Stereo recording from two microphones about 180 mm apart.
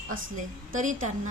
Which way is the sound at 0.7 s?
45° right (ahead or behind).